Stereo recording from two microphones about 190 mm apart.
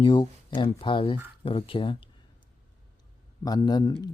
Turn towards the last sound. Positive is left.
turn(degrees=20)  # may be behind; listen again after turning